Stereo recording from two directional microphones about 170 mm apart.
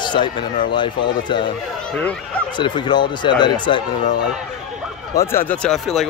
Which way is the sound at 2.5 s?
30° left (ahead or behind).